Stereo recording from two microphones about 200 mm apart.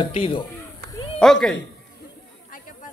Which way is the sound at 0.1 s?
25° left (ahead or behind).